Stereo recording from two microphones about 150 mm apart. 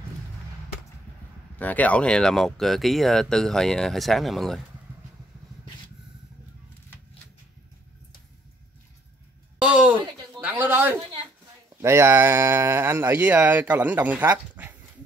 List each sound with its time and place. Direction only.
1.6 s speech: 10° left (ahead or behind)
9.6 s a sound: 5° right (ahead or behind)
11.8 s speech: 15° right (ahead or behind)